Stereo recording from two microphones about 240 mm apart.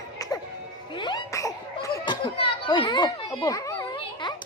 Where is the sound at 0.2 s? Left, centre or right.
Centre.